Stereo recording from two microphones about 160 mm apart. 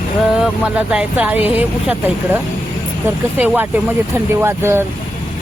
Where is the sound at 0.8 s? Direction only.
5° right (ahead or behind).